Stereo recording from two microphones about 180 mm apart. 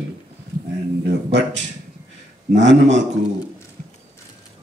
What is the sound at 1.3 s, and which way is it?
Speech, 85° right.